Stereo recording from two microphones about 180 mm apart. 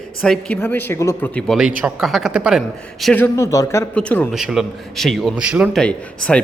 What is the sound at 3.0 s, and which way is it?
Speech, 10° left (ahead or behind).